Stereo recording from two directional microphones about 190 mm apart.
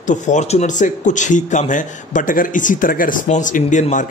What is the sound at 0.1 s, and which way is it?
Speech, 40° left (ahead or behind).